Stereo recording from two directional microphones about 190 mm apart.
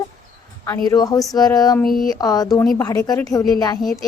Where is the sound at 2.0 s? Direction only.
20° left (ahead or behind).